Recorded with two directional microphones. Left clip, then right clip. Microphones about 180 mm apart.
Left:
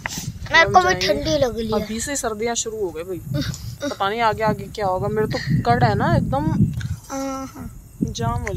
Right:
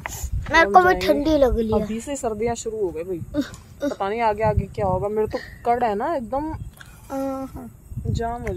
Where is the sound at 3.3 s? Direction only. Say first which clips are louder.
Right 1 dB; 30° right (ahead or behind).